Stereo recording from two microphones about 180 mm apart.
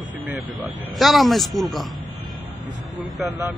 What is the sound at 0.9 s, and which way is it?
Speech, centre (ahead or behind).